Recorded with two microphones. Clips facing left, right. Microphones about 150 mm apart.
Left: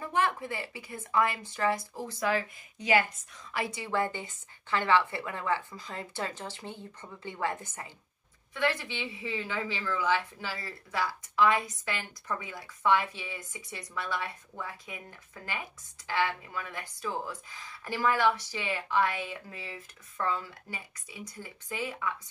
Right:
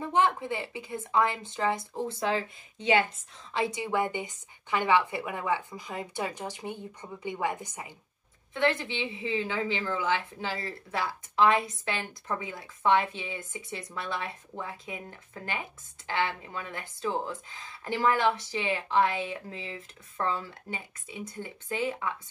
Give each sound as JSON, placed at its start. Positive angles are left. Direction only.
{"t": 0.0, "sound": "a woman's voice", "side_deg": -20}